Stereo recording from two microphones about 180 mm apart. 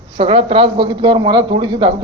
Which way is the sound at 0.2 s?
30° right (ahead or behind).